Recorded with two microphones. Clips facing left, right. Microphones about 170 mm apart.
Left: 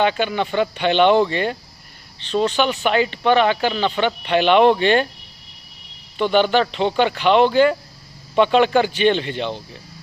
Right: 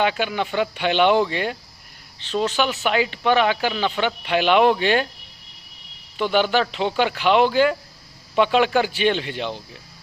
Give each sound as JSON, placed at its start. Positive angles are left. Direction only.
{"t": 0.0, "sound": "speech", "side_deg": -5}
{"t": 6.1, "sound": "speech", "side_deg": -5}